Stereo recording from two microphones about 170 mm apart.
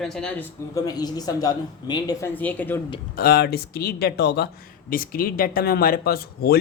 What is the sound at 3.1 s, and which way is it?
Speech, 65° left (ahead or behind).